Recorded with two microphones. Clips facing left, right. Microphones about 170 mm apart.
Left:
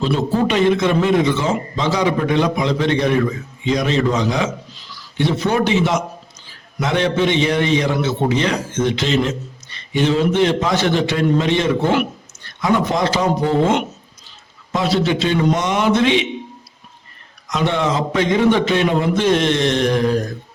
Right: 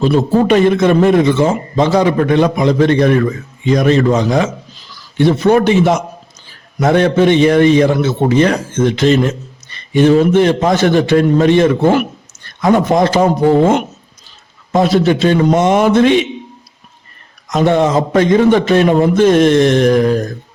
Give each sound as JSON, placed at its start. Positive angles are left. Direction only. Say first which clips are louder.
{"t": 0.0, "sound": "a man's voice", "louder": "right 6 dB", "side_deg": -50}
{"t": 14.7, "sound": "a man's voice", "louder": "right 6 dB", "side_deg": -50}
{"t": 17.5, "sound": "a man's voice", "louder": "right 7 dB", "side_deg": -45}